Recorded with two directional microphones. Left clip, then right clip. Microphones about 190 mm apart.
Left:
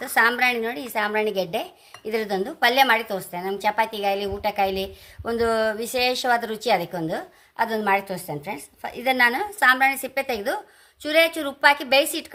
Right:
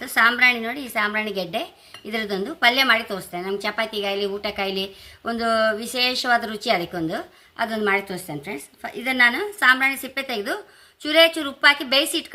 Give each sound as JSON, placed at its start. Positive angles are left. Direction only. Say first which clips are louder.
{"t": 0.0, "sound": "a woman's voice", "louder": "right 2 dB", "side_deg": 45}